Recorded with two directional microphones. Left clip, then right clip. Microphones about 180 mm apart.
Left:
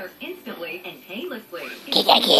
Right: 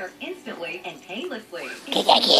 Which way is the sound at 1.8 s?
30° left (ahead or behind).